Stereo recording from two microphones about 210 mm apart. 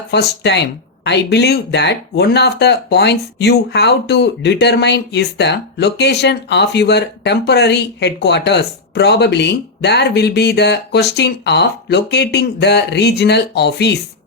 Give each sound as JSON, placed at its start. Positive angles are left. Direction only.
{"t": 0.1, "sound": "speech", "side_deg": 55}